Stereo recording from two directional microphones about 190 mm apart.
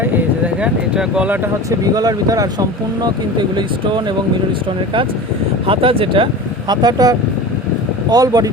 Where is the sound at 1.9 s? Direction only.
20° right (ahead or behind).